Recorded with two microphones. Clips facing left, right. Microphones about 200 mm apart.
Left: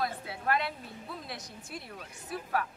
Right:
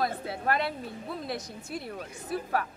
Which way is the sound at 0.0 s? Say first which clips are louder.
Right 4 dB; 40° right (ahead or behind).